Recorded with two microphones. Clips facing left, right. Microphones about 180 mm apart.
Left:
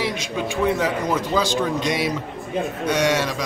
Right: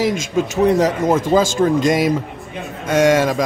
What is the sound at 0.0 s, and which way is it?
A man's voice, 40° right (ahead or behind).